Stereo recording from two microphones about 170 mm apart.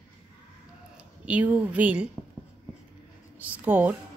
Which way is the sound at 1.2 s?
10° right (ahead or behind).